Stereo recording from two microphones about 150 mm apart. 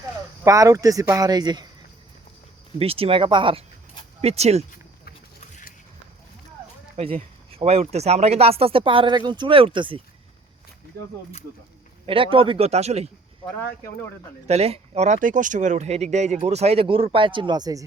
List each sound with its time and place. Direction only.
0.4 s speech: 20° right (ahead or behind)
2.7 s speech: 40° right (ahead or behind)
4.2 s speech: 45° right (ahead or behind)
6.9 s speech: 45° right (ahead or behind)
12.0 s speech: 35° right (ahead or behind)
13.6 s speech: 15° left (ahead or behind)
14.4 s speech: 45° right (ahead or behind); by 17.8 s 25° right (ahead or behind)